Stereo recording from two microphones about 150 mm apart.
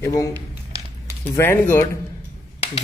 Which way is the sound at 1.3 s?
15° left (ahead or behind).